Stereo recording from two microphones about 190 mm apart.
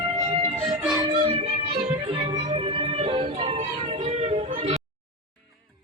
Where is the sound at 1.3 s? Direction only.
30° right (ahead or behind).